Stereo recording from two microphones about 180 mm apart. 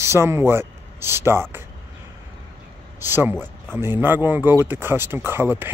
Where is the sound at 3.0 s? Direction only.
10° right (ahead or behind).